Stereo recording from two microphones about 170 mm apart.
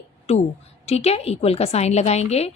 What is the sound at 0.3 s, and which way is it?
A woman's voice, 40° left (ahead or behind).